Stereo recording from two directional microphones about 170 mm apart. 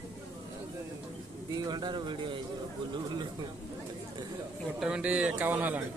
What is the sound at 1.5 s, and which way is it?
Speech, 25° right (ahead or behind).